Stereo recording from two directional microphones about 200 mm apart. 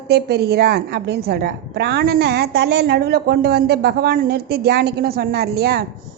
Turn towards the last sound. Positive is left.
turn(degrees=-50)  # may be behind; listen again after turning